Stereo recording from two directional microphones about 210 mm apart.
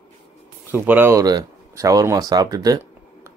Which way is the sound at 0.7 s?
10° right (ahead or behind).